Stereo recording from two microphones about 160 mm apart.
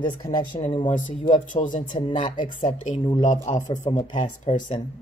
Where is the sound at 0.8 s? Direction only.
50° left (ahead or behind).